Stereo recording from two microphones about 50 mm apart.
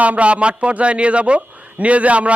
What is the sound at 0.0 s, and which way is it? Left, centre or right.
A man's voice, right.